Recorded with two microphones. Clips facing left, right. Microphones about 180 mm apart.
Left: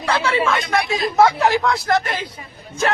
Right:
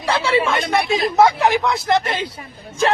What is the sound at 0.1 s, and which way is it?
Speech, 30° right (ahead or behind).